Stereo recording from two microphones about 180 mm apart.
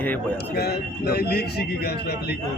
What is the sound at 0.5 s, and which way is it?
A man's voice, 60° left (ahead or behind).